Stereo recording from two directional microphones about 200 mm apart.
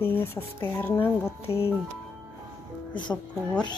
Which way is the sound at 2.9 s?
20° left (ahead or behind).